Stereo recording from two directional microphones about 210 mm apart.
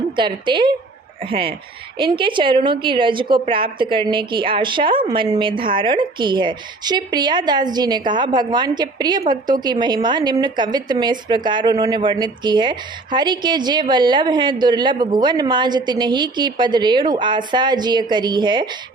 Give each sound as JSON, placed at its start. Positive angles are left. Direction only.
{"t": 0.2, "sound": "speech", "side_deg": -20}